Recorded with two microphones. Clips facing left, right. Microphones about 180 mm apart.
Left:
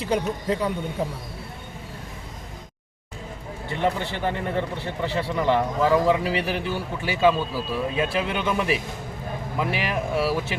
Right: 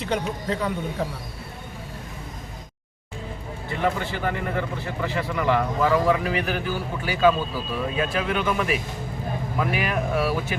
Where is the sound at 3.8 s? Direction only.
25° left (ahead or behind).